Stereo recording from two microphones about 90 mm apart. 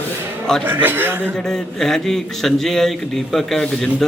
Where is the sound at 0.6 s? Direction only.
20° right (ahead or behind).